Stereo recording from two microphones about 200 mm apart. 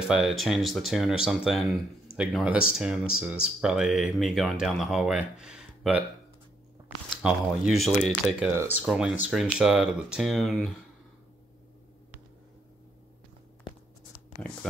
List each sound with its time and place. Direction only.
0.1 s speech: 5° right (ahead or behind)
7.2 s speech: centre (ahead or behind)